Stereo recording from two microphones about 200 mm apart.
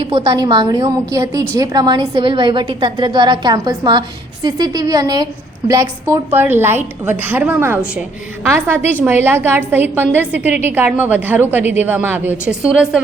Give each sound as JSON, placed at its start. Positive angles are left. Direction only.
{"t": 0.1, "sound": "a woman's voice", "side_deg": -20}